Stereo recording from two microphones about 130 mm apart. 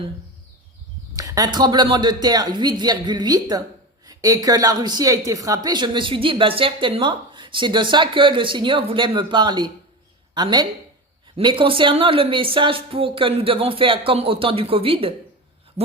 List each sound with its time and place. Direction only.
1.1 s speech: 25° right (ahead or behind); by 15.1 s 45° right (ahead or behind)